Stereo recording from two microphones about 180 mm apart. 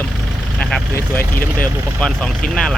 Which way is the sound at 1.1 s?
10° left (ahead or behind).